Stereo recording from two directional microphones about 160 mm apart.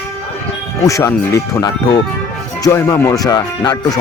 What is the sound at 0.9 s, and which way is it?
Speech, 20° left (ahead or behind).